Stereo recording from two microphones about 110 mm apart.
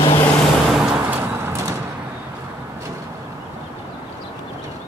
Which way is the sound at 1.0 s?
20° right (ahead or behind).